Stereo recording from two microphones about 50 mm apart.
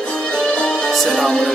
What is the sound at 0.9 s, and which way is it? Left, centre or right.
Music, centre.